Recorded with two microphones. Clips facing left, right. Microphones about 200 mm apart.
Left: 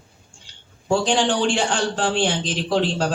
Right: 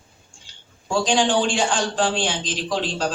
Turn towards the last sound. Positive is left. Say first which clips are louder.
# left 3 dB
turn(degrees=65)  # may be behind; listen again after turning